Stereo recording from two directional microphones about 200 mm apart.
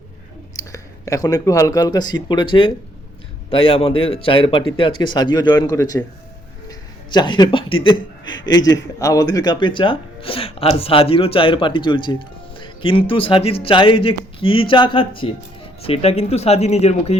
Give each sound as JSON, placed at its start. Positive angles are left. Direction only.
{"t": 0.7, "sound": "speech", "side_deg": 15}
{"t": 6.7, "sound": "a sound", "side_deg": 20}
{"t": 7.9, "sound": "a man's voice", "side_deg": 20}